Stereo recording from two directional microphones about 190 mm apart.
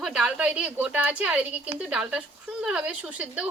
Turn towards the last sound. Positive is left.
turn(degrees=-5)  # may be behind; listen again after turning